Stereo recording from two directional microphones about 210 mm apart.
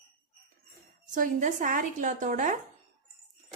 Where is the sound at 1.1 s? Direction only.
40° right (ahead or behind).